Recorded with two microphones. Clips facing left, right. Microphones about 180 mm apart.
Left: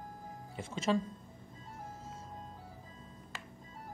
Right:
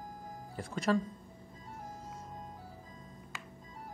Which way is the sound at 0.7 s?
25° left (ahead or behind).